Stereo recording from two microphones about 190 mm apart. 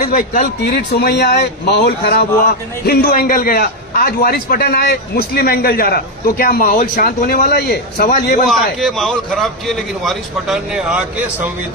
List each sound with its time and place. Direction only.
0.1 s a man's voice: 50° left (ahead or behind)
8.4 s a man's voice: centre (ahead or behind)